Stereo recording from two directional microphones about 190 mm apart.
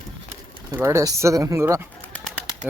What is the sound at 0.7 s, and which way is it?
Speech, 15° right (ahead or behind).